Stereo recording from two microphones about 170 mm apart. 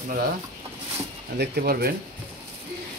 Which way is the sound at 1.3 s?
65° right (ahead or behind).